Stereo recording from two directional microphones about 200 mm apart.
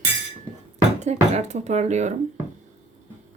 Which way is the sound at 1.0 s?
35° right (ahead or behind).